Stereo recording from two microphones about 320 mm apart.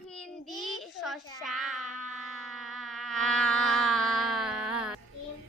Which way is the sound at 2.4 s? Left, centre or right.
Centre.